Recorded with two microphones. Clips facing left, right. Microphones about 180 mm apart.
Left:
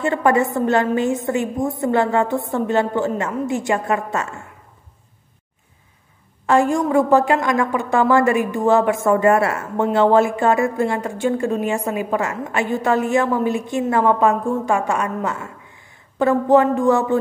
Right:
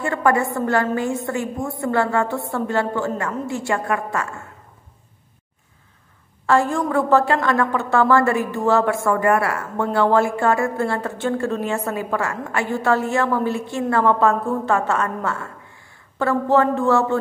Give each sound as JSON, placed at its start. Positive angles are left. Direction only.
{"t": 0.0, "sound": "a woman's voice", "side_deg": 20}
{"t": 6.4, "sound": "a woman's voice", "side_deg": 15}